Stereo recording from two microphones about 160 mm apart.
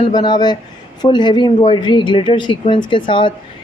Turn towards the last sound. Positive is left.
turn(degrees=30)  # may be behind; listen again after turning